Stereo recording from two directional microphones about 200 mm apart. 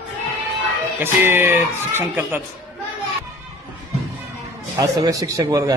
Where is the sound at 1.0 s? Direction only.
10° right (ahead or behind).